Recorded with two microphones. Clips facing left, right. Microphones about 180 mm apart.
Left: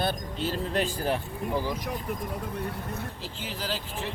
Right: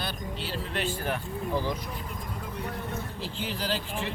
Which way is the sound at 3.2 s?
45° left (ahead or behind).